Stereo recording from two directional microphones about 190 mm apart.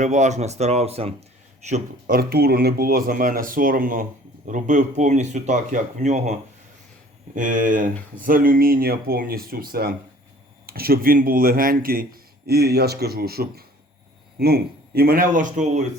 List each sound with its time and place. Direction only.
0.0 s speech: 40° right (ahead or behind)
2.1 s speech: 55° right (ahead or behind); by 6.3 s 40° right (ahead or behind)
7.3 s speech: 40° right (ahead or behind)